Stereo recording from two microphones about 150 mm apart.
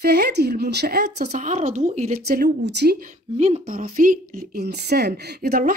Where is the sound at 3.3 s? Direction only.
50° right (ahead or behind).